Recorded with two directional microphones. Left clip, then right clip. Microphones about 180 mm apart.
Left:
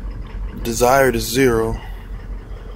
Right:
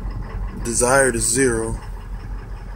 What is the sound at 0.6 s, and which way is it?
Speech, 10° left (ahead or behind).